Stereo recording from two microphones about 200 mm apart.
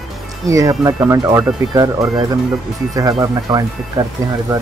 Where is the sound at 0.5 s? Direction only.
15° right (ahead or behind).